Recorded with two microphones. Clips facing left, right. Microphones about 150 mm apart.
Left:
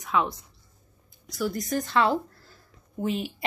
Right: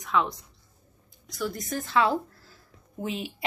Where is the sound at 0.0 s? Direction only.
Centre (ahead or behind).